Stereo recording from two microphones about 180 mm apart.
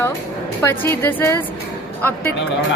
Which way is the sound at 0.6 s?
10° left (ahead or behind).